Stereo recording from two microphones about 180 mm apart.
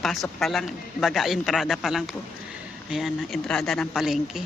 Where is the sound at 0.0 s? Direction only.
Centre (ahead or behind).